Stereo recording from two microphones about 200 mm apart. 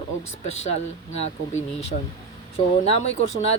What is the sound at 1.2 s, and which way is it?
Speech, 30° left (ahead or behind).